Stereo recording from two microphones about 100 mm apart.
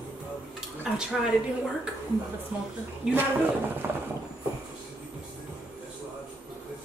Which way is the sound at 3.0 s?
10° right (ahead or behind).